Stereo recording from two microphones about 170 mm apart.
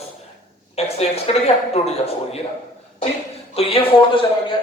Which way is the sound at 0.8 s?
35° left (ahead or behind).